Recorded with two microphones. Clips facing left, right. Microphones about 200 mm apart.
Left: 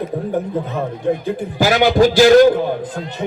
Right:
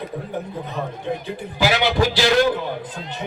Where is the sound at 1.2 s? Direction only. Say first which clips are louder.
Left 5 dB; 45° left (ahead or behind).